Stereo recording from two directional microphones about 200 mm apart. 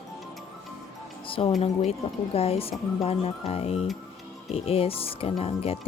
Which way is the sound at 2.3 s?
30° left (ahead or behind).